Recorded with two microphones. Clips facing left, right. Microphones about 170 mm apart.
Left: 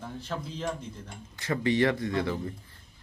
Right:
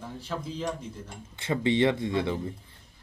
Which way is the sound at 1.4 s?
25° right (ahead or behind).